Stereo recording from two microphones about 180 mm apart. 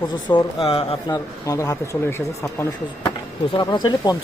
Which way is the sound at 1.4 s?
20° left (ahead or behind).